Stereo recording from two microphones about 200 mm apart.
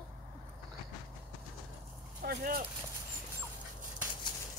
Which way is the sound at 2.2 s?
45° right (ahead or behind).